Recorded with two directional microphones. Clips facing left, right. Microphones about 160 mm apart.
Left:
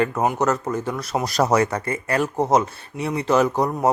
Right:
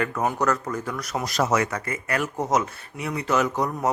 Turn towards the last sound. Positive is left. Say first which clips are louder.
# left 5 dB
turn(degrees=30)  # may be behind; listen again after turning